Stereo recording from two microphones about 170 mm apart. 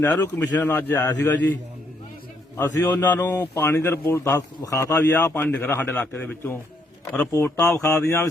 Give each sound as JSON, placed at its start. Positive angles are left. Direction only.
{"t": 0.0, "sound": "a man's voice", "side_deg": 10}
{"t": 2.6, "sound": "a man's voice", "side_deg": 10}